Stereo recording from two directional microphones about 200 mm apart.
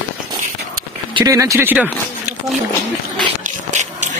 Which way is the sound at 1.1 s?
15° right (ahead or behind).